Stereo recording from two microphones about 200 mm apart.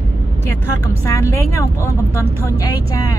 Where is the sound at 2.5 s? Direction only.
20° left (ahead or behind).